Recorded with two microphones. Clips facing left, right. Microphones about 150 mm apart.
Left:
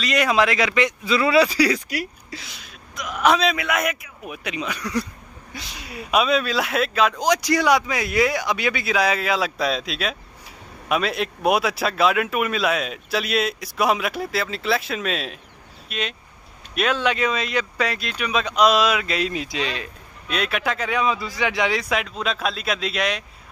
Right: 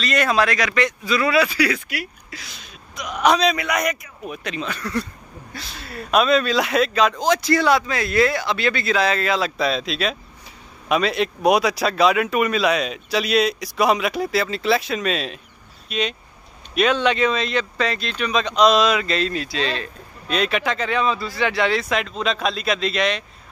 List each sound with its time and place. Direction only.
0.0 s speech: 15° left (ahead or behind); by 2.0 s 35° left (ahead or behind)
2.6 s speech: 5° left (ahead or behind)